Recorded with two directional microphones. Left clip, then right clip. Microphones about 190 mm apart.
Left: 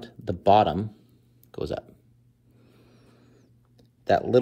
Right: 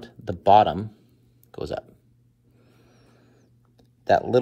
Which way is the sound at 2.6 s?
15° left (ahead or behind).